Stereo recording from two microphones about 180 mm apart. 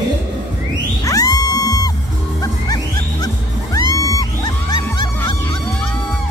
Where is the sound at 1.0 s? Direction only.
20° left (ahead or behind).